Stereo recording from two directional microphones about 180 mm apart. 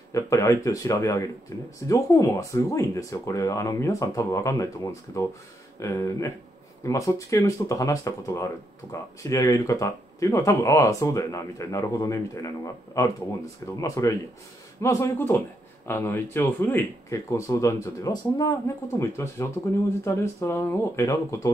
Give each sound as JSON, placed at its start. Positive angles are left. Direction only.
{"t": 0.1, "sound": "speech", "side_deg": 15}